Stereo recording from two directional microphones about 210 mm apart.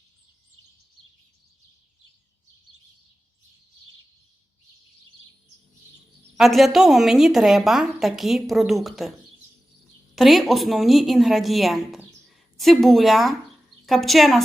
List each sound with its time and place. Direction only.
6.3 s a woman's voice: centre (ahead or behind)
10.2 s a woman's voice: centre (ahead or behind)